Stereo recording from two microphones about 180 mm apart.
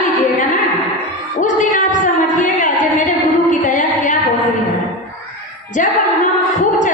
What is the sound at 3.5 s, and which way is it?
Music, 45° left (ahead or behind).